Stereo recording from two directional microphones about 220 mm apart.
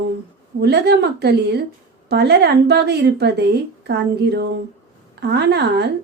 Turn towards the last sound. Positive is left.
turn(degrees=-50)  # may be behind; listen again after turning